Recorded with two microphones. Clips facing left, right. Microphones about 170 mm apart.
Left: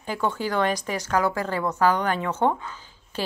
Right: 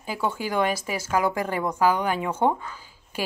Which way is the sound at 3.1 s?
10° right (ahead or behind).